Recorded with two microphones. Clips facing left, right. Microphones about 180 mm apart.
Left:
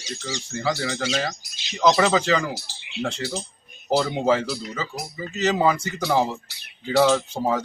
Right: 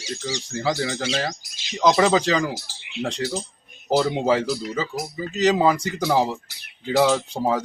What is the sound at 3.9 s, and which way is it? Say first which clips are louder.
Speech: right 1 dB; 10° right (ahead or behind).